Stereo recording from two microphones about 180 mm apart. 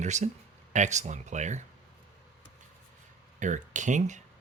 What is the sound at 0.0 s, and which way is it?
Speech, 40° right (ahead or behind).